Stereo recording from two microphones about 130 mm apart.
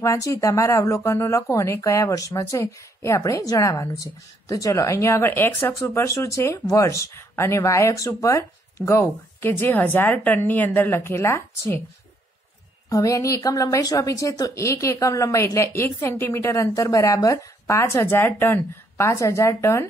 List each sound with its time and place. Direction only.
0.0 s speech: 25° left (ahead or behind)
12.9 s speech: 25° left (ahead or behind)